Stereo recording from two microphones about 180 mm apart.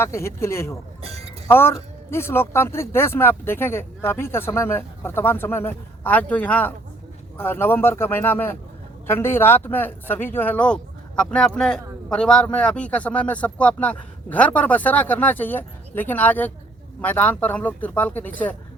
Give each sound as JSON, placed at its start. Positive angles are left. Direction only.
{"t": 0.0, "sound": "a man's voice", "side_deg": 15}
{"t": 1.0, "sound": "music", "side_deg": -35}
{"t": 1.5, "sound": "a man's voice", "side_deg": 10}